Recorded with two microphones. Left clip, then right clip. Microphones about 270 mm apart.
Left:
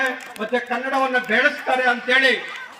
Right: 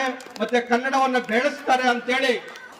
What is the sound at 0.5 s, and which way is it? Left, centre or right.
A man's voice, right.